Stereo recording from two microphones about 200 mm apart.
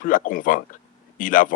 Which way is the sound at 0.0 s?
45° left (ahead or behind).